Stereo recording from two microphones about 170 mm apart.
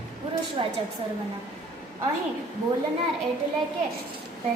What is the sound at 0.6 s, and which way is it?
Speech, 35° right (ahead or behind).